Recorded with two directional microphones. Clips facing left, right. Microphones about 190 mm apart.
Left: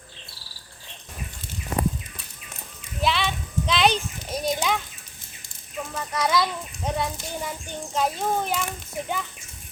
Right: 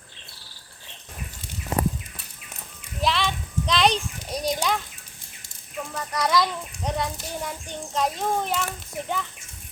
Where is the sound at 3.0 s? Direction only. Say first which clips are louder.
Even; centre (ahead or behind).